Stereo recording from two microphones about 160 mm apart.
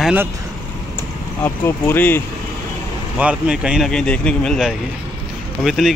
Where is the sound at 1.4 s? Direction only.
15° left (ahead or behind).